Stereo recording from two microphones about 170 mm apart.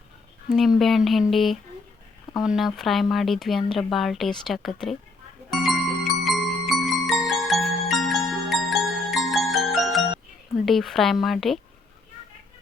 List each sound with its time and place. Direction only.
0.8 s speech: centre (ahead or behind)
5.5 s glockenspiel: centre (ahead or behind)
10.7 s speech: centre (ahead or behind)